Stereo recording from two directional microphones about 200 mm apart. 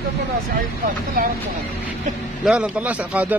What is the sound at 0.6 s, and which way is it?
Speech, 45° right (ahead or behind).